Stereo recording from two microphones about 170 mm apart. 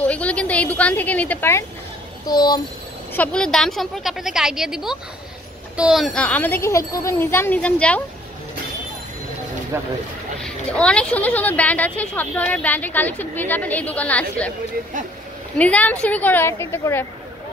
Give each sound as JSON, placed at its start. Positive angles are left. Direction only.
{"t": 0.0, "sound": "a woman's voice", "side_deg": 10}
{"t": 2.2, "sound": "speech", "side_deg": 25}
{"t": 3.2, "sound": "a woman's voice", "side_deg": 5}
{"t": 10.4, "sound": "a woman's voice", "side_deg": 5}
{"t": 15.5, "sound": "a woman's voice", "side_deg": 10}